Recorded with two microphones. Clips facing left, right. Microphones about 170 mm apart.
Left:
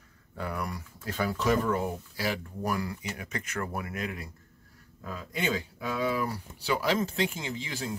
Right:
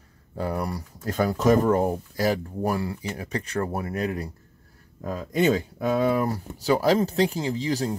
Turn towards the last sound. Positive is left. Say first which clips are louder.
# right 9 dB
turn(degrees=-40)  # may be behind; listen again after turning